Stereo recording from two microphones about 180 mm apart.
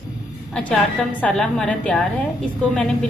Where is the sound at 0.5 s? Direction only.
5° left (ahead or behind).